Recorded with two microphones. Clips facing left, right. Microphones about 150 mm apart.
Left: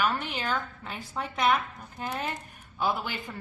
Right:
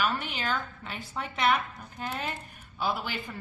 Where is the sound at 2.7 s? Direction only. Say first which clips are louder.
Left 2 dB; centre (ahead or behind).